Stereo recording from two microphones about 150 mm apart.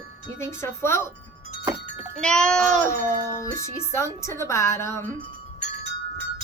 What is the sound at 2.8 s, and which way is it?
Speech, 20° left (ahead or behind).